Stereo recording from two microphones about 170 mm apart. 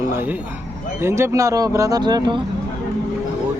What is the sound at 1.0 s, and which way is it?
Speech, 15° right (ahead or behind).